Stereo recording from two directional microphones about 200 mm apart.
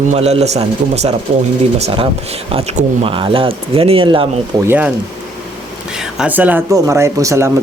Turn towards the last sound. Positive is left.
turn(degrees=-15)  # may be behind; listen again after turning